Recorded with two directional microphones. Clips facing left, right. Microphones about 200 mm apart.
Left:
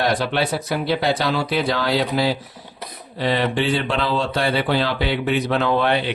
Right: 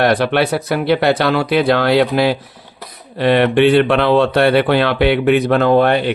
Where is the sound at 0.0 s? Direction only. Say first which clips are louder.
Right 6 dB; 65° right (ahead or behind).